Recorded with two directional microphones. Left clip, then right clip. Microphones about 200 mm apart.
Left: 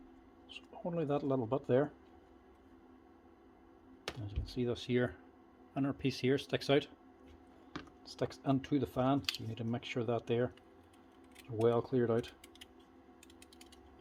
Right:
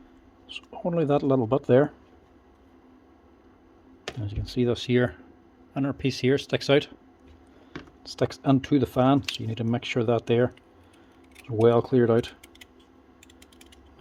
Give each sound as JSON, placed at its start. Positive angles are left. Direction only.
{"t": 0.4, "sound": "speech", "side_deg": -50}
{"t": 4.2, "sound": "speech", "side_deg": -45}
{"t": 8.0, "sound": "speech", "side_deg": -45}